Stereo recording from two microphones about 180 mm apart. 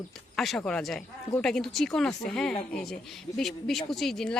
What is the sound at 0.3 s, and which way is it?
Speech, centre (ahead or behind).